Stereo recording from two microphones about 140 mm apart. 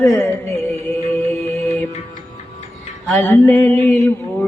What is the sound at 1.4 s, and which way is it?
Music, 50° right (ahead or behind).